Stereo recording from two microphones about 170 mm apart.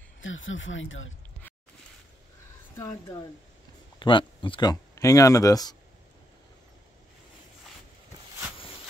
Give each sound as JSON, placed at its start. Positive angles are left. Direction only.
{"t": 2.8, "sound": "speech", "side_deg": 20}